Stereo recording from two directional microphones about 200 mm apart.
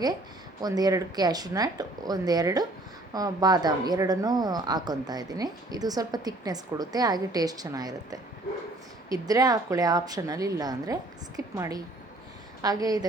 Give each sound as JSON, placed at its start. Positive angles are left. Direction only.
{"t": 0.6, "sound": "a woman's voice", "side_deg": -20}